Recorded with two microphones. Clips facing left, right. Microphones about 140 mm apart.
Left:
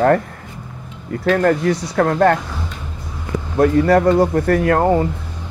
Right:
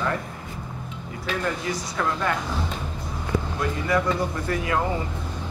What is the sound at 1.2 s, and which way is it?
Speech, 60° left (ahead or behind).